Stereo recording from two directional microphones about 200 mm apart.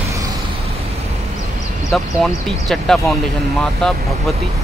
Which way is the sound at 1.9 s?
Centre (ahead or behind).